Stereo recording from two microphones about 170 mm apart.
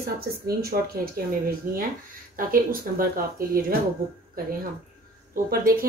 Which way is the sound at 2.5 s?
55° right (ahead or behind).